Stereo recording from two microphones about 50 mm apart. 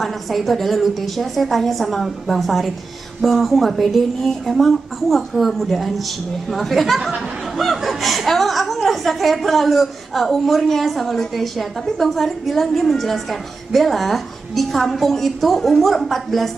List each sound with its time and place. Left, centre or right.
0.0 s a woman's voice: centre